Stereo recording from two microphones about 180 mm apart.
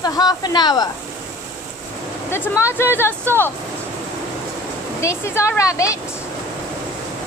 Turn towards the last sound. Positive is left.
turn(degrees=15)  # may be behind; listen again after turning